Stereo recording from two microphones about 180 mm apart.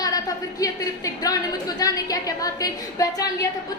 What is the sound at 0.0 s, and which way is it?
A woman's voice, 20° left (ahead or behind).